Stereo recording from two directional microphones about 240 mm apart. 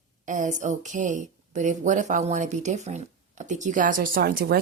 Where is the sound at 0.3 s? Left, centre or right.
Right.